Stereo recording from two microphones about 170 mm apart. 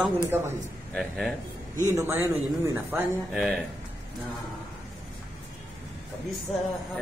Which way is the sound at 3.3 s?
Centre (ahead or behind).